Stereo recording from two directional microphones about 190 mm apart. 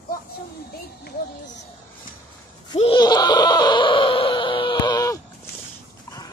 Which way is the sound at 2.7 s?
25° left (ahead or behind).